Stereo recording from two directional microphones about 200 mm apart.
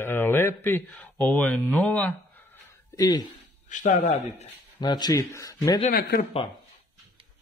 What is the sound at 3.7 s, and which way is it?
Speech, 40° left (ahead or behind).